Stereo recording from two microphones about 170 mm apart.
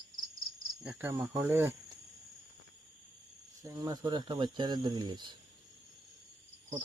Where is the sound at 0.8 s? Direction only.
10° right (ahead or behind).